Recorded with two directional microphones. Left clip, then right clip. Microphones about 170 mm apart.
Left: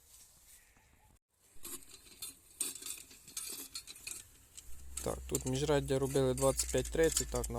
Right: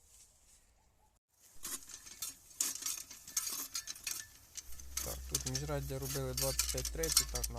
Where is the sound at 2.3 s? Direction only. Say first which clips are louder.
Right 4 dB; 20° right (ahead or behind).